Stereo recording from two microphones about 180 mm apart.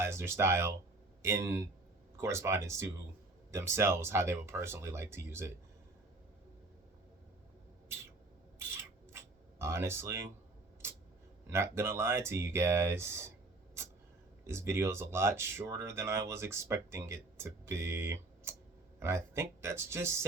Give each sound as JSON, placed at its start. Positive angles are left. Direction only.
{"t": 0.0, "sound": "speech", "side_deg": -15}
{"t": 8.5, "sound": "a sound", "side_deg": -15}
{"t": 11.4, "sound": "speech", "side_deg": -15}
{"t": 14.4, "sound": "speech", "side_deg": -15}